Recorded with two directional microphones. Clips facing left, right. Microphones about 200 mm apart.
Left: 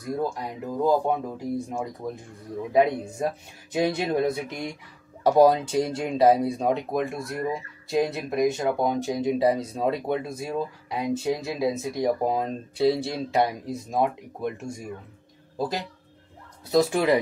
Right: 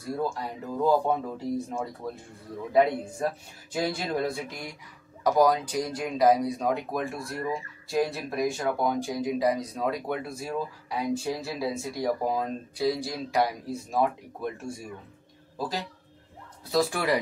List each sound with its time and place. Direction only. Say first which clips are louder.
0.0 s speech: left 2 dB; 15° left (ahead or behind)
3.7 s speech: left 5 dB; 20° left (ahead or behind)